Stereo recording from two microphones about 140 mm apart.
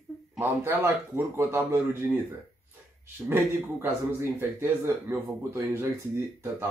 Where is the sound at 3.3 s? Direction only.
20° right (ahead or behind).